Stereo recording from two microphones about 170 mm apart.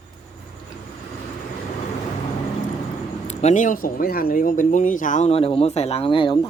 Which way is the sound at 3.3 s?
40° left (ahead or behind).